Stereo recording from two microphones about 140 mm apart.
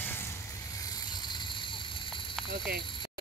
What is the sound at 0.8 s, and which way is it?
Vehicle, 30° left (ahead or behind).